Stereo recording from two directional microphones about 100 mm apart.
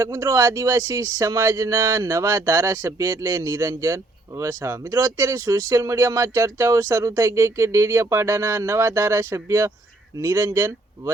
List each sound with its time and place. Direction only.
0.0 s speech: 25° right (ahead or behind)